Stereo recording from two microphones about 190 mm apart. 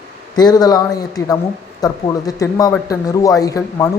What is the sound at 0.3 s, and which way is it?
Speech, 20° left (ahead or behind).